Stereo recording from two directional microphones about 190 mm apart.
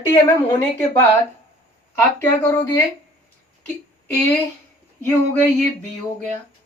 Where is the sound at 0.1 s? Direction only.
15° left (ahead or behind).